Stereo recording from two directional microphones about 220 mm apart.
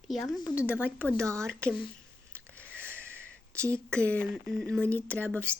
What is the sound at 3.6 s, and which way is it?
Speech, 5° left (ahead or behind).